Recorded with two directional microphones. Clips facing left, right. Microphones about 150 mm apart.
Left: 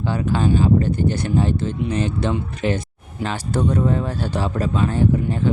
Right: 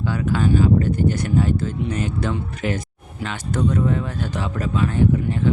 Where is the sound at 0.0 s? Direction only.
30° left (ahead or behind).